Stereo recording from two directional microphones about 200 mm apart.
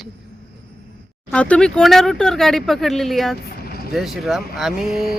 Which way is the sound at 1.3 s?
5° left (ahead or behind).